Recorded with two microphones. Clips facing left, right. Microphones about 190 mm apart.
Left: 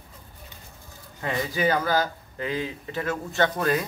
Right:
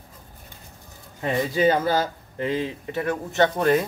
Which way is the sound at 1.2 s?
20° right (ahead or behind).